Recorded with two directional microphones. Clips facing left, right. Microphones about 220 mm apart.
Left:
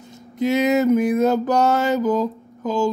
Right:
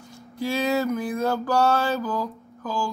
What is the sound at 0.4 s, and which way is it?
Mantra, 20° left (ahead or behind).